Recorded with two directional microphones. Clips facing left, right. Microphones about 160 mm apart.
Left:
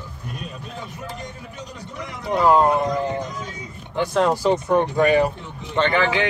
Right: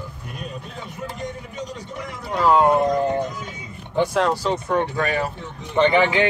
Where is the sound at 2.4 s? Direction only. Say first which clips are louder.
Even; 5° right (ahead or behind).